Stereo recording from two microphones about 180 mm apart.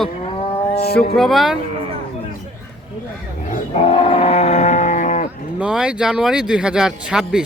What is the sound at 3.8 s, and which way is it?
Roaring cats, 30° left (ahead or behind).